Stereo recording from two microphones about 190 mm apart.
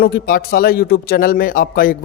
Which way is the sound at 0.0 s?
50° left (ahead or behind).